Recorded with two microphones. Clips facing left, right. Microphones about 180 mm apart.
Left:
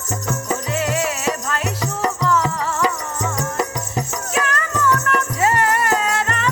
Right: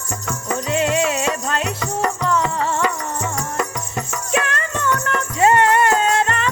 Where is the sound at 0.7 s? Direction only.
25° right (ahead or behind).